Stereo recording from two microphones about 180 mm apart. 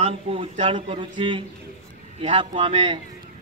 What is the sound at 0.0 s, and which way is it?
A man's voice, 35° right (ahead or behind).